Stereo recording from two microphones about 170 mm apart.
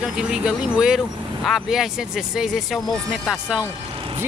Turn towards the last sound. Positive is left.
turn(degrees=-5)  # may be behind; listen again after turning